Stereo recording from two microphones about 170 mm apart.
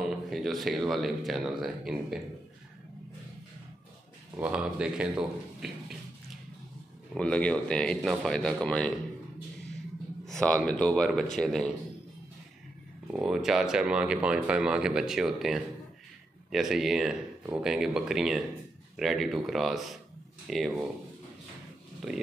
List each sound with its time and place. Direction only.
0.0 s speech: centre (ahead or behind)
4.4 s speech: 5° right (ahead or behind)
7.2 s speech: 5° left (ahead or behind)
10.2 s speech: 5° left (ahead or behind)
13.1 s speech: 5° right (ahead or behind)